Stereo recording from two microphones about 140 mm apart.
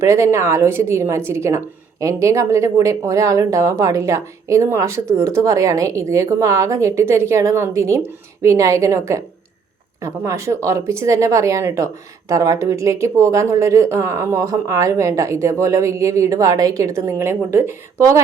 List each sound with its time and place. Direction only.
0.0 s a woman's voice: 20° right (ahead or behind)